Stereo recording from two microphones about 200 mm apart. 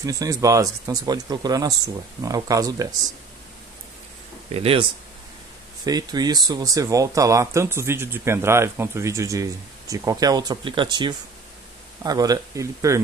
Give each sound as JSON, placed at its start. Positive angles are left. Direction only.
{"t": 0.0, "sound": "speech", "side_deg": -15}
{"t": 4.5, "sound": "speech", "side_deg": -30}
{"t": 5.9, "sound": "speech", "side_deg": -20}